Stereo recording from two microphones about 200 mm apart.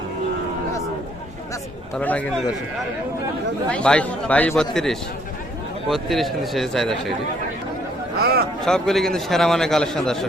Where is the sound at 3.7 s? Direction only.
5° left (ahead or behind).